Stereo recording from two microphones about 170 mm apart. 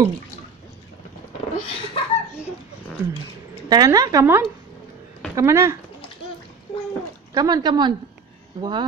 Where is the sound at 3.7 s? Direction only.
20° right (ahead or behind).